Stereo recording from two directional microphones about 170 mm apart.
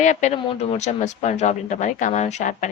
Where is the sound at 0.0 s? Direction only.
45° left (ahead or behind).